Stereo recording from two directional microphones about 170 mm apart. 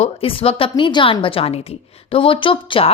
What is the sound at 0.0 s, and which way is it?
A woman's voice, 35° left (ahead or behind).